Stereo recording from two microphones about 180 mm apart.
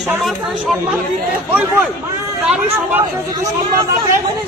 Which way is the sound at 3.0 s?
20° right (ahead or behind).